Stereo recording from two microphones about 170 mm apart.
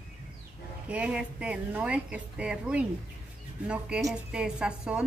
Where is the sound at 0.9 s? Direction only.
5° right (ahead or behind).